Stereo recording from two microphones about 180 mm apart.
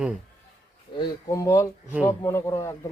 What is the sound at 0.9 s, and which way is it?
A man's voice, 25° left (ahead or behind).